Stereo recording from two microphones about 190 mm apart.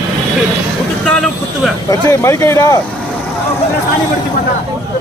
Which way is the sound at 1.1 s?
5° left (ahead or behind).